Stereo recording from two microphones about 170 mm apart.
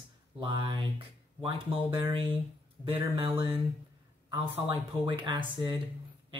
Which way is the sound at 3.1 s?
35° right (ahead or behind).